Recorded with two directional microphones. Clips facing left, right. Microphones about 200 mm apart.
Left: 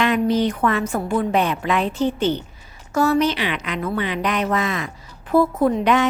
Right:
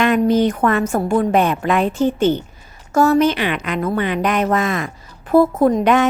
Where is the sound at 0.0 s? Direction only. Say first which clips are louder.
Right 4 dB; 50° right (ahead or behind).